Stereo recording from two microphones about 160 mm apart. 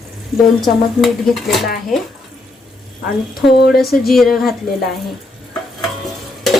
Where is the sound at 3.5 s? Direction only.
75° left (ahead or behind).